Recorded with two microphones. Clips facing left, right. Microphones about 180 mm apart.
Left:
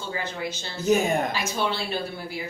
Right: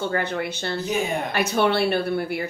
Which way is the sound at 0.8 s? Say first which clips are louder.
Left 6 dB; 45° left (ahead or behind).